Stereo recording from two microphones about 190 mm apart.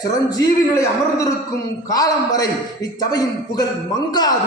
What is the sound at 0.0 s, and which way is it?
Speech, 20° left (ahead or behind).